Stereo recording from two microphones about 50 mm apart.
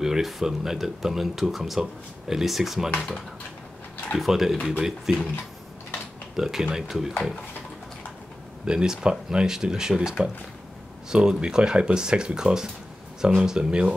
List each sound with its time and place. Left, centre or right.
0.0 s speech: centre
4.2 s speech: centre
6.3 s speech: centre
8.6 s speech: centre